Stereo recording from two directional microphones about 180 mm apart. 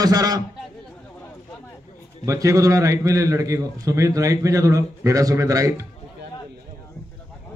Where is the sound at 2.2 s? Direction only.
15° right (ahead or behind).